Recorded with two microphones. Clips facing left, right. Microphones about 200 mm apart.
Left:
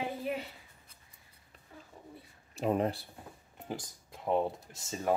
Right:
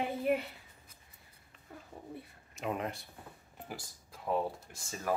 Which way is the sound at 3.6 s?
20° left (ahead or behind).